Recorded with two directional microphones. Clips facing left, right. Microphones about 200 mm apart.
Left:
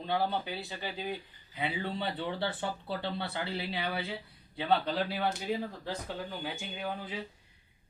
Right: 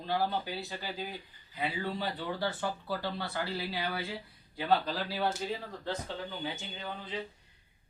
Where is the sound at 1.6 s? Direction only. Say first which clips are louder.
Even; 25° left (ahead or behind).